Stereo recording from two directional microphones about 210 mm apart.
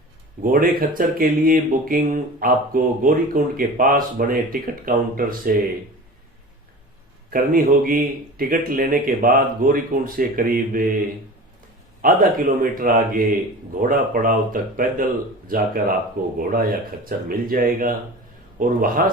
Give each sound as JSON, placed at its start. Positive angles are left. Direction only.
{"t": 0.5, "sound": "speech", "side_deg": -40}
{"t": 7.3, "sound": "speech", "side_deg": -45}
{"t": 12.0, "sound": "speech", "side_deg": -40}